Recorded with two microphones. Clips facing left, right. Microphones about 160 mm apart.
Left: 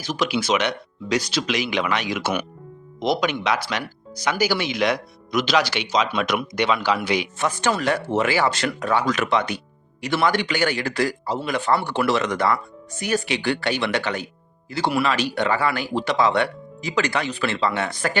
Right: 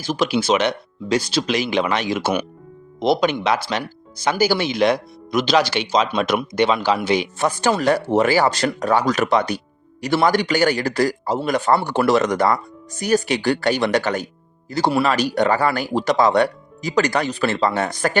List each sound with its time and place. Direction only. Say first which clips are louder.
0.0 s speech: right 4 dB; 30° right (ahead or behind)